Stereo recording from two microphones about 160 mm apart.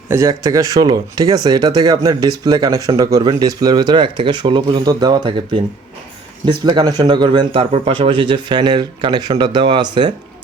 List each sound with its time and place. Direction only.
0.1 s speech: 20° right (ahead or behind)